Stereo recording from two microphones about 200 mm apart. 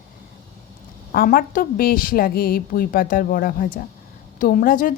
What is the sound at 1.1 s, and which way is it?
A woman's voice, 45° left (ahead or behind).